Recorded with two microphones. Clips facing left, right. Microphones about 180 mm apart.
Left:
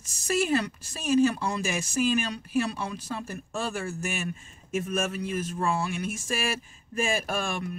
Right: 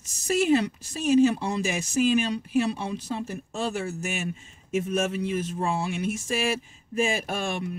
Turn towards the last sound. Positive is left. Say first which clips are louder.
# right 1 dB
turn(degrees=-20)  # may be behind; listen again after turning